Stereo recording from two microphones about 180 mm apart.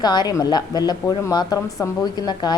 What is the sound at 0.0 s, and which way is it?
A woman's voice, 25° left (ahead or behind).